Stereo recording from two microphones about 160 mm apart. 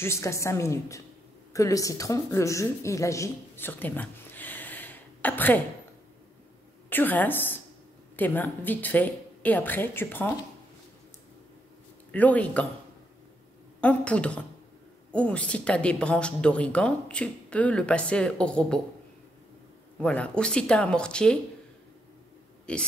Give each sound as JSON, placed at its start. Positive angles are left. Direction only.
{"t": 0.0, "sound": "a woman's voice", "side_deg": 15}
{"t": 6.9, "sound": "a woman's voice", "side_deg": 10}
{"t": 12.1, "sound": "speech", "side_deg": 10}
{"t": 13.7, "sound": "speech", "side_deg": 10}
{"t": 20.0, "sound": "speech", "side_deg": 5}
{"t": 22.7, "sound": "speech", "side_deg": 5}